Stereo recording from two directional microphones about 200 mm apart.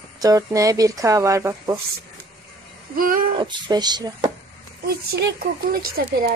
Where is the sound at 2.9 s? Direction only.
45° right (ahead or behind).